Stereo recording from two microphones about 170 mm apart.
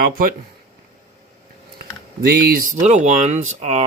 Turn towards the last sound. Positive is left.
turn(degrees=-40)  # may be behind; listen again after turning